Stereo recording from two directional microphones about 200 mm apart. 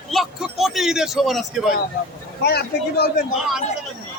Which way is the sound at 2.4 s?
55° left (ahead or behind).